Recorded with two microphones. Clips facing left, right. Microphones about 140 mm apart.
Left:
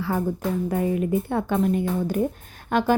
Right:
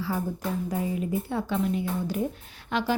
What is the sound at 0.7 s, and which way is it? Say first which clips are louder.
A woman's voice: left 7 dB; 60° left (ahead or behind).